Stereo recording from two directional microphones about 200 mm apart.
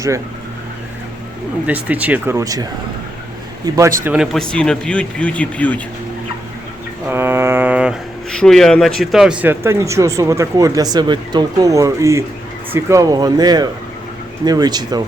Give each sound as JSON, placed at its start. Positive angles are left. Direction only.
{"t": 1.6, "sound": "speech", "side_deg": -10}
{"t": 3.8, "sound": "speech", "side_deg": -15}
{"t": 7.1, "sound": "speech", "side_deg": -10}